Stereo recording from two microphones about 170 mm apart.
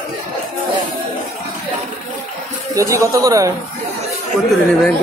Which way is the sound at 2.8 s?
20° right (ahead or behind).